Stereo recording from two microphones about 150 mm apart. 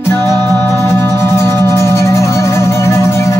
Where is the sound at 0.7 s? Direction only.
15° left (ahead or behind).